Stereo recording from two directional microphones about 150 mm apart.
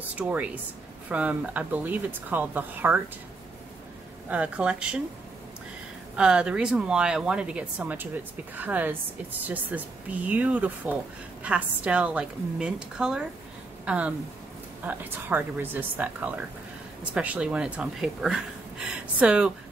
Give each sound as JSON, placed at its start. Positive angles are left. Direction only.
{"t": 0.1, "sound": "speech", "side_deg": -10}
{"t": 4.3, "sound": "speech", "side_deg": -10}
{"t": 6.1, "sound": "speech", "side_deg": -5}